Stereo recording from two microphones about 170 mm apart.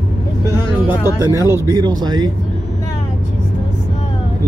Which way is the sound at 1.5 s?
15° right (ahead or behind).